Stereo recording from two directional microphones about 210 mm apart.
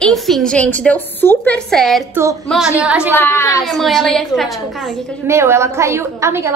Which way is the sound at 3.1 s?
10° left (ahead or behind).